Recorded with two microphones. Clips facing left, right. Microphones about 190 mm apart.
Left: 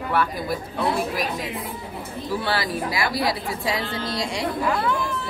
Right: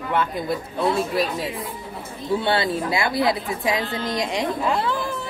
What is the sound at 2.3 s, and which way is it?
A woman's voice, 25° right (ahead or behind).